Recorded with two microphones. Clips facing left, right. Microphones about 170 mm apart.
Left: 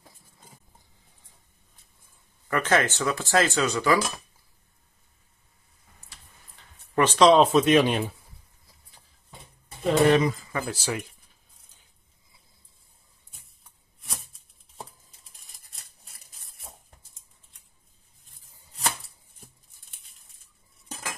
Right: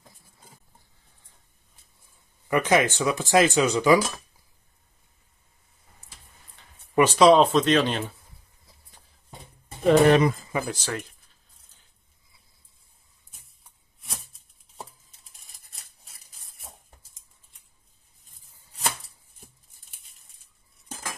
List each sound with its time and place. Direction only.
2.4 s speech: 15° right (ahead or behind)
7.0 s speech: 10° right (ahead or behind)
7.4 s speech: 10° left (ahead or behind)
9.8 s speech: 65° right (ahead or behind)
10.7 s speech: 10° left (ahead or behind)
14.8 s a sound: centre (ahead or behind)